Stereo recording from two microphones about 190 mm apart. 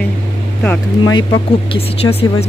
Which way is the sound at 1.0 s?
20° left (ahead or behind).